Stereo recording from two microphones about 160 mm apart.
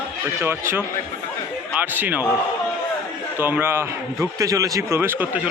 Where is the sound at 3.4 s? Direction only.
15° right (ahead or behind).